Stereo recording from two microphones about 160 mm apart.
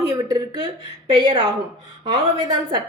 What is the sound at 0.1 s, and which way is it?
A woman's voice, 25° right (ahead or behind).